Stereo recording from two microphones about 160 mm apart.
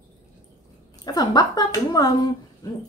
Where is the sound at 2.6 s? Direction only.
20° left (ahead or behind).